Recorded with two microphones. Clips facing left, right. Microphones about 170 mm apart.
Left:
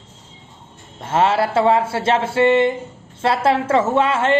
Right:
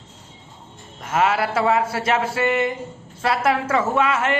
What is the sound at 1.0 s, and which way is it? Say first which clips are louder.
Speech: left 3 dB; 30° left (ahead or behind).